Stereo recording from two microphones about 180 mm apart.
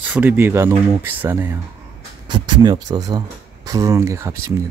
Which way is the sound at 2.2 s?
25° right (ahead or behind).